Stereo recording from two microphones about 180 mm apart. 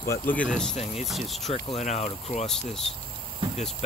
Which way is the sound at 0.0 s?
10° left (ahead or behind).